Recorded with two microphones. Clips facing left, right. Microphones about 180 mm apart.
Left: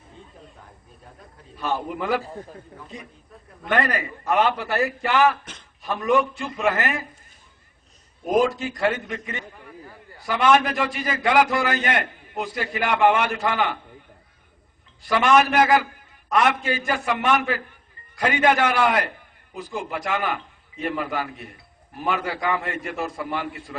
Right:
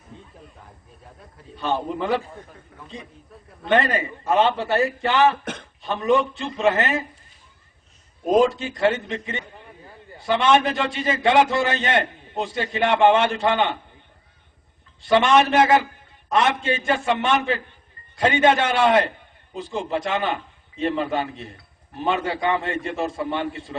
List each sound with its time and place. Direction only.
1.5 s a man's voice: 25° right (ahead or behind)
2.2 s a man's voice: 35° left (ahead or behind)
3.7 s a man's voice: 25° right (ahead or behind)
4.9 s a man's voice: centre (ahead or behind)
5.5 s a man's voice: 55° right (ahead or behind)
5.8 s a man's voice: 25° right (ahead or behind)
8.3 s a man's voice: 25° right (ahead or behind)
15.0 s a man's voice: 25° right (ahead or behind)